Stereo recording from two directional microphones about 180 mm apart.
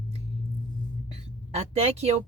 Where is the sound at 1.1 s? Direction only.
35° right (ahead or behind).